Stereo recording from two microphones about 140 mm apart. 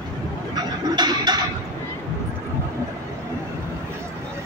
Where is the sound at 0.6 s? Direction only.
30° right (ahead or behind).